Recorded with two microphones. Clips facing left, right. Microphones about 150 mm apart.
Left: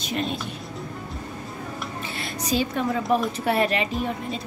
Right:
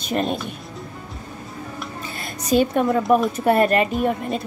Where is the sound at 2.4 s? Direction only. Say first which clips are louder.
Right 7 dB; 50° right (ahead or behind).